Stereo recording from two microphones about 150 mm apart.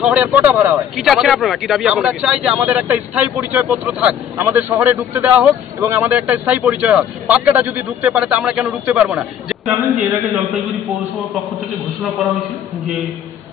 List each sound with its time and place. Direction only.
0.0 s a man's voice: 10° right (ahead or behind)
0.7 s a man's voice: centre (ahead or behind)